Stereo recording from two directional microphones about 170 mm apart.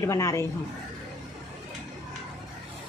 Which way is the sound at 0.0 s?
15° left (ahead or behind).